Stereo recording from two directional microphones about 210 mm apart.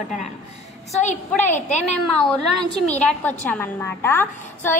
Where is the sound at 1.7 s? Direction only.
35° left (ahead or behind).